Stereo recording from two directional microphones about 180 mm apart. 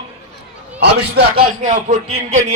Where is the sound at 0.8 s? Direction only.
65° right (ahead or behind).